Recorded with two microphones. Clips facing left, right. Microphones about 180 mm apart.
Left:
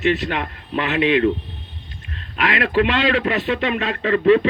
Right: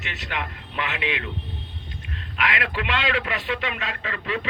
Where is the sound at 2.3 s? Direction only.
30° left (ahead or behind).